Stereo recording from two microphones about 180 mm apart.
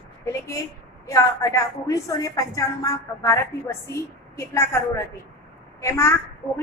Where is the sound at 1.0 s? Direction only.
15° left (ahead or behind).